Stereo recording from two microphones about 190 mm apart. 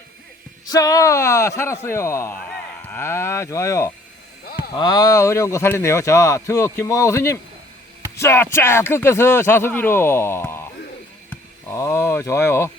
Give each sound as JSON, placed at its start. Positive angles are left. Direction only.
{"t": 0.7, "sound": "speech", "side_deg": 20}
{"t": 11.7, "sound": "speech", "side_deg": 15}